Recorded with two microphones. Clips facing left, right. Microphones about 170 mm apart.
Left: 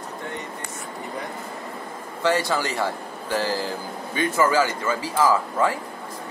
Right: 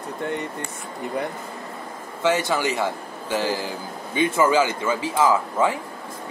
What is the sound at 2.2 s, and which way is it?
Speech, 20° right (ahead or behind).